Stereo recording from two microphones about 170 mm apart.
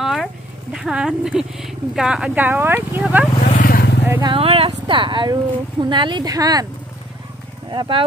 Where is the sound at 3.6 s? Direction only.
60° left (ahead or behind).